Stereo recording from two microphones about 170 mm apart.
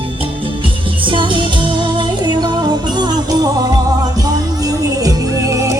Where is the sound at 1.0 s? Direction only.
30° right (ahead or behind).